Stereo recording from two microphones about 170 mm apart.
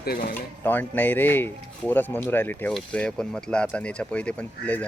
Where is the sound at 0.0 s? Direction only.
65° left (ahead or behind).